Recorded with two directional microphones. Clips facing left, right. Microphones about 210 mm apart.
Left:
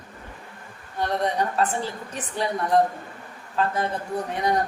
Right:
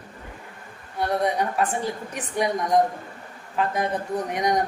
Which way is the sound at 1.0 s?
10° right (ahead or behind).